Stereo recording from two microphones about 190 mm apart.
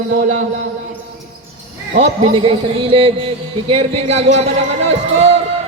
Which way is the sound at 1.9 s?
30° right (ahead or behind).